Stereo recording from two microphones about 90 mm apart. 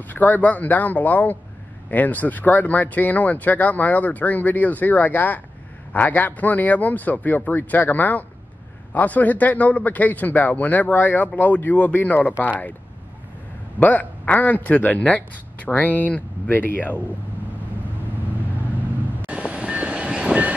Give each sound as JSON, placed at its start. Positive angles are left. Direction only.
{"t": 0.0, "sound": "speech", "side_deg": 20}
{"t": 13.7, "sound": "speech", "side_deg": 20}
{"t": 19.2, "sound": "train", "side_deg": -10}